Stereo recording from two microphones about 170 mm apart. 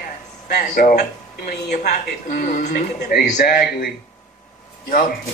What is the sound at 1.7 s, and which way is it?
A man's voice, 45° left (ahead or behind).